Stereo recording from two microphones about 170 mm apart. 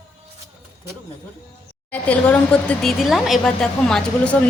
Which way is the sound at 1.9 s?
10° left (ahead or behind).